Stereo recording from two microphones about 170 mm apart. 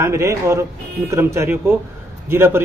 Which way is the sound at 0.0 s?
15° right (ahead or behind).